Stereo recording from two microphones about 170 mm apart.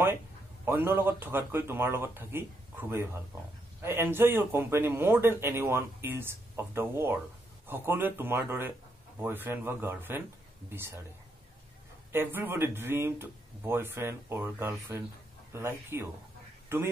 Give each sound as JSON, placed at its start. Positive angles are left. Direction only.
{"t": 0.7, "sound": "speech", "side_deg": -15}
{"t": 12.1, "sound": "speech", "side_deg": -15}